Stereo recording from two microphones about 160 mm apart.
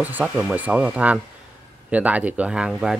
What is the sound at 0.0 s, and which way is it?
Speech, 10° right (ahead or behind).